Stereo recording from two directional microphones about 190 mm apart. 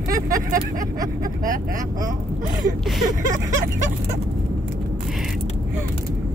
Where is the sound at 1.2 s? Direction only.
45° right (ahead or behind).